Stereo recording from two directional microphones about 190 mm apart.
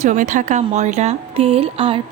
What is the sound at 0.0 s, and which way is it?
A woman's voice, 40° right (ahead or behind).